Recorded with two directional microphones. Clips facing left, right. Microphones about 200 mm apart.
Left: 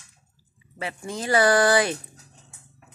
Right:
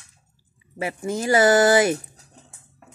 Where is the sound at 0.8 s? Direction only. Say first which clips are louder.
Right 5 dB; 25° right (ahead or behind).